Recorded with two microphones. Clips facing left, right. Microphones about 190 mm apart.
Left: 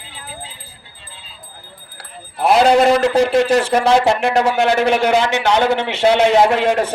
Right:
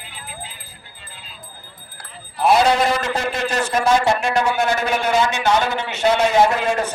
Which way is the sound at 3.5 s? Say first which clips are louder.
Left 4 dB; 70° left (ahead or behind).